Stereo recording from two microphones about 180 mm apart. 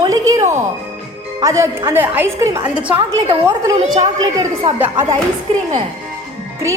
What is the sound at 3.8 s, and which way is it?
Speech, 40° right (ahead or behind).